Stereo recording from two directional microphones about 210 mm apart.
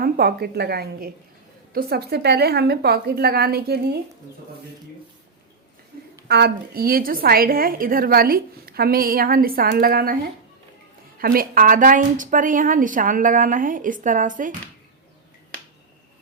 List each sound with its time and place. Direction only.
0.0 s a woman's voice: 45° right (ahead or behind)
6.2 s a woman's voice: 50° right (ahead or behind)
11.2 s a woman's voice: 45° right (ahead or behind)